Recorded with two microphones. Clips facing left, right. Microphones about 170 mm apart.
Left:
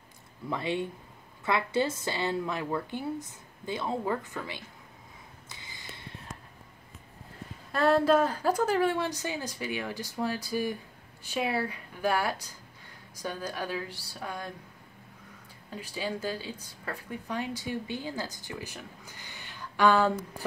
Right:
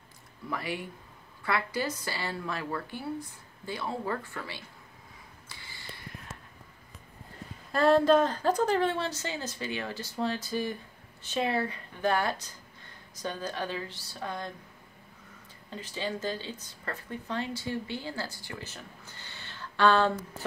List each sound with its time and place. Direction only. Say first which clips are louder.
0.5 s a woman's voice: left 4 dB; 25° left (ahead or behind)
5.5 s a sound: even; 20° left (ahead or behind)
7.7 s speech: right 1 dB; centre (ahead or behind)
15.7 s speech: even; 10° left (ahead or behind)